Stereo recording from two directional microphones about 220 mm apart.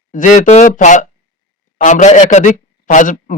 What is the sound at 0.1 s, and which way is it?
A man's voice, 35° left (ahead or behind).